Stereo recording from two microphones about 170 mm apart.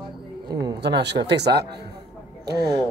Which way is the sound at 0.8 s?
85° right.